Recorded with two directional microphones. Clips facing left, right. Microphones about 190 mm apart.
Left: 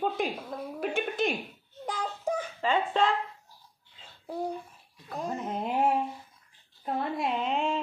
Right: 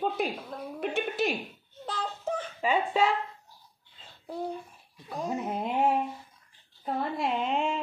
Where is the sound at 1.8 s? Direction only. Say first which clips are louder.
Left 1 dB; 10° left (ahead or behind).